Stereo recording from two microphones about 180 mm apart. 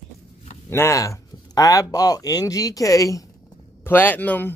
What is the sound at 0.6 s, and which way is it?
Speech, 15° left (ahead or behind).